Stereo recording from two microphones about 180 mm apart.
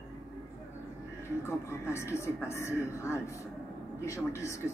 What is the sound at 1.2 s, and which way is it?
Speech, 15° left (ahead or behind).